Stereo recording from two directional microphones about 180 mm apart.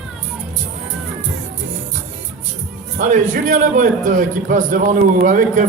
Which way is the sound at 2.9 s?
45° right (ahead or behind).